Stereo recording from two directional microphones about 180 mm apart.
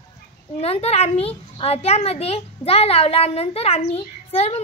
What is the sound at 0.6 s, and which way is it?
A child's voice, 35° left (ahead or behind).